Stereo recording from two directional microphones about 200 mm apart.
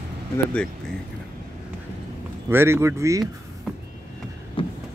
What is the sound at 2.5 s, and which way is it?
Speech, 10° right (ahead or behind).